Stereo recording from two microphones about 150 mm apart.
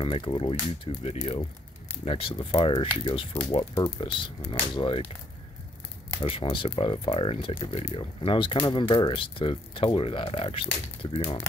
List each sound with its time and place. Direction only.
0.0 s speech: 35° left (ahead or behind)
6.1 s speech: 40° left (ahead or behind)